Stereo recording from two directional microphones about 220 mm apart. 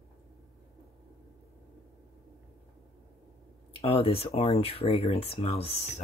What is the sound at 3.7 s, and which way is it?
Speech, 25° left (ahead or behind).